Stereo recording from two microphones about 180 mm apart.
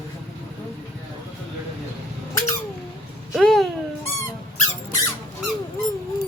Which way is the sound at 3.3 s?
Centre (ahead or behind).